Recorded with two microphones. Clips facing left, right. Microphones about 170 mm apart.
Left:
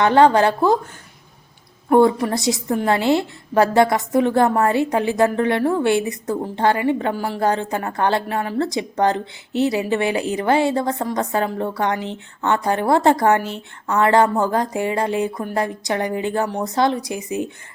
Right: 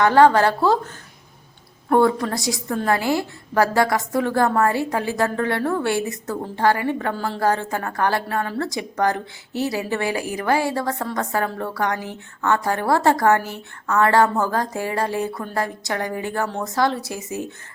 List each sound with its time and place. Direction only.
0.0 s a woman's voice: 20° left (ahead or behind)
1.9 s a woman's voice: 15° left (ahead or behind)